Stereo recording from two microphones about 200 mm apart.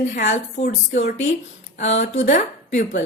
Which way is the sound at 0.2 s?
40° left (ahead or behind).